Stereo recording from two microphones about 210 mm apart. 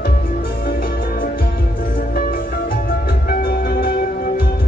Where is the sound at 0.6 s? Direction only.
45° left (ahead or behind).